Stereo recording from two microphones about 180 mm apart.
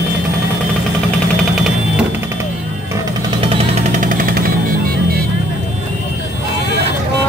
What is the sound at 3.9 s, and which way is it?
Jackhammer, 50° right (ahead or behind).